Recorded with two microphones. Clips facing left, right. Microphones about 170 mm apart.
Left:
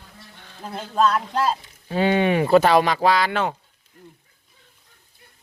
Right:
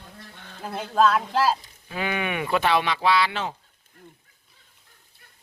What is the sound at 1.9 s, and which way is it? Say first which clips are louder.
Speech: left 9 dB; 30° left (ahead or behind).